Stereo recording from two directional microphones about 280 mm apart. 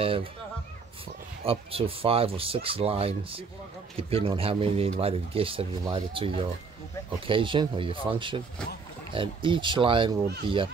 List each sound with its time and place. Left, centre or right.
0.0 s speech: centre
1.4 s speech: right